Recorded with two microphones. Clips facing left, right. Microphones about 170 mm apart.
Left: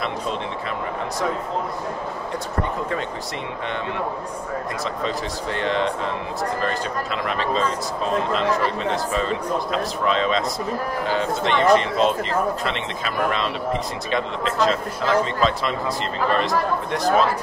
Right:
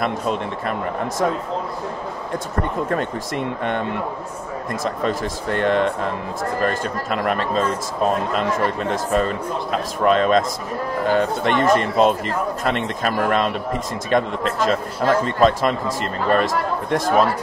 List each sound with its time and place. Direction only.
0.0 s a man's voice: 50° right (ahead or behind)
4.8 s a man's voice: 50° right (ahead or behind)